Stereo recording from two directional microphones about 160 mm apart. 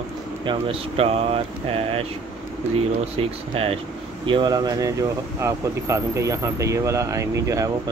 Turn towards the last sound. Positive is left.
turn(degrees=-20)  # may be behind; listen again after turning